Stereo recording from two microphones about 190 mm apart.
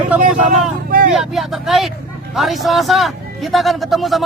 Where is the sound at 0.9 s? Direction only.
50° right (ahead or behind).